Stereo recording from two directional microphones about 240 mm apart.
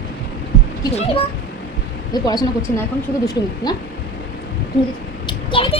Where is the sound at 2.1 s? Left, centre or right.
Centre.